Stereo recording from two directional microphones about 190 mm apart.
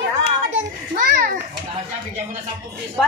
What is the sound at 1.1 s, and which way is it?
Children playing, 50° right (ahead or behind).